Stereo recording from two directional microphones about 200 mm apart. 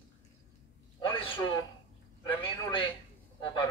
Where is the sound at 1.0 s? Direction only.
25° left (ahead or behind).